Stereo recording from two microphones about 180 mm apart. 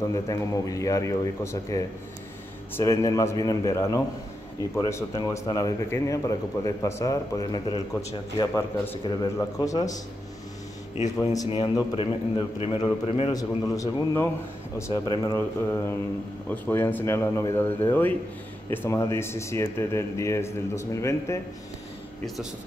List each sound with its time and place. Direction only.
0.0 s a man's voice: 15° left (ahead or behind)
11.3 s a man's voice: 25° left (ahead or behind)